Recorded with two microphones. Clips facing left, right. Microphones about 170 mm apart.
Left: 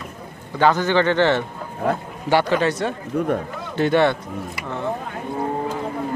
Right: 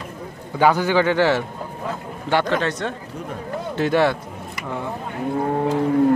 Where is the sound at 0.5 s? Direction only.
10° right (ahead or behind).